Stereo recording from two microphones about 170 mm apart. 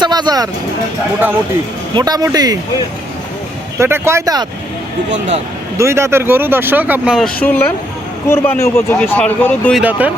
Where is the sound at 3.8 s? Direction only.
15° right (ahead or behind).